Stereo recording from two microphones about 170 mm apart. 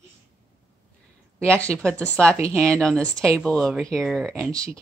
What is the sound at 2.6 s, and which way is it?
Speech, 5° left (ahead or behind).